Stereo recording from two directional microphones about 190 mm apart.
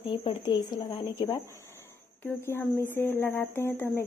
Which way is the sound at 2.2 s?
10° left (ahead or behind).